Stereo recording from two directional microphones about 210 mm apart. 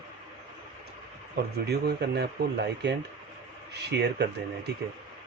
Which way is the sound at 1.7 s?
50° right (ahead or behind).